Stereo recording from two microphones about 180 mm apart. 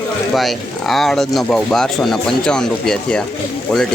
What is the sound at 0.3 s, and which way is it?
Speech, centre (ahead or behind).